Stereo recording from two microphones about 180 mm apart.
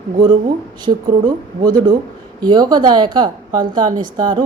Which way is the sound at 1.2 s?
25° right (ahead or behind).